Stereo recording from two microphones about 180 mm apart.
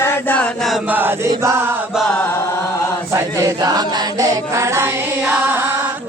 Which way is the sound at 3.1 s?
20° right (ahead or behind).